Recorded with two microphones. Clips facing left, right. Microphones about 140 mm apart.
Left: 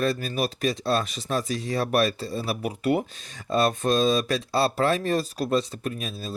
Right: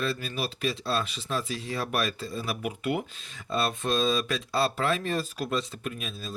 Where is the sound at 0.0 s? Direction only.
40° left (ahead or behind).